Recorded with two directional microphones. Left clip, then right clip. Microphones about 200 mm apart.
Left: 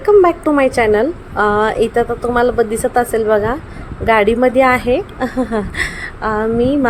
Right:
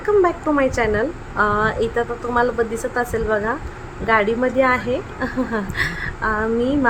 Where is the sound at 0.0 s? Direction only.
25° left (ahead or behind).